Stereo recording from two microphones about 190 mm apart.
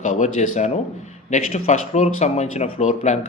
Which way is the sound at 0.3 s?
40° left (ahead or behind).